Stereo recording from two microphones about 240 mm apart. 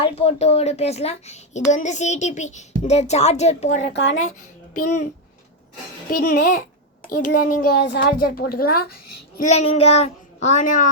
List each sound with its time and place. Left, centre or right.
0.0 s speech: left
3.8 s speech: left
6.1 s a child's voice: left
8.9 s a child's voice: left
9.4 s speech: left